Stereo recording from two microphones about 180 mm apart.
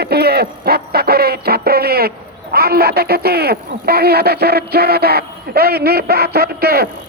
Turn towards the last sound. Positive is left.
turn(degrees=-60)  # may be behind; listen again after turning